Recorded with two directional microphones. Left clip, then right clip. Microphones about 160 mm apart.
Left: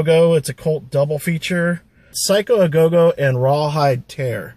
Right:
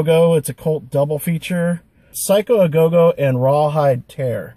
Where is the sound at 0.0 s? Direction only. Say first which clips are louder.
Even; 10° right (ahead or behind).